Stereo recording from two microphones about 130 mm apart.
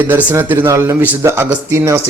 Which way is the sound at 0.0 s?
15° right (ahead or behind).